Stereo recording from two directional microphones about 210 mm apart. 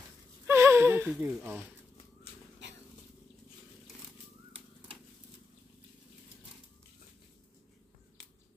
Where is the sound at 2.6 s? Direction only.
55° right (ahead or behind).